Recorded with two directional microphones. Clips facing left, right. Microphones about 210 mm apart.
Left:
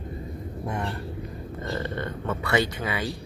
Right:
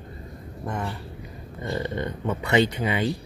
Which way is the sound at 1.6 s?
15° right (ahead or behind).